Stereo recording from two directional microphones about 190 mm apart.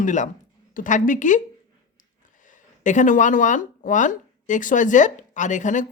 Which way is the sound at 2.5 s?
40° left (ahead or behind).